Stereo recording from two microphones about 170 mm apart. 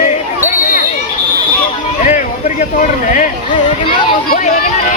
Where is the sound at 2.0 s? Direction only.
45° left (ahead or behind).